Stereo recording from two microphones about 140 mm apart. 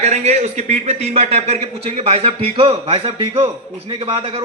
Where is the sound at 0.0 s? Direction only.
55° right (ahead or behind).